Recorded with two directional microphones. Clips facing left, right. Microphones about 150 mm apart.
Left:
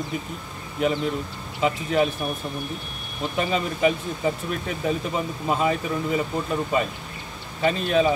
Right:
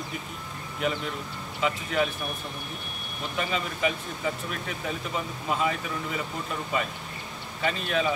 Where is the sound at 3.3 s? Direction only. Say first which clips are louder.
Left 5 dB; 35° left (ahead or behind).